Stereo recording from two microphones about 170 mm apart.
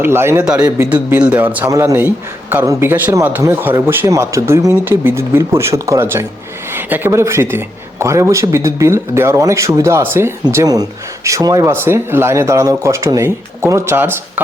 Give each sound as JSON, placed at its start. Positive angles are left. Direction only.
{"t": 0.0, "sound": "speech", "side_deg": -15}